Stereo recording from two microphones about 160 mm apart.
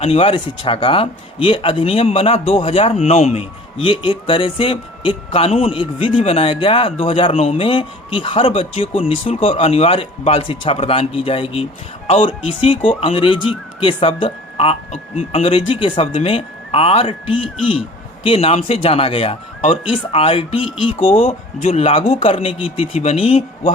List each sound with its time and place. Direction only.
0.0 s a man's voice: 35° left (ahead or behind)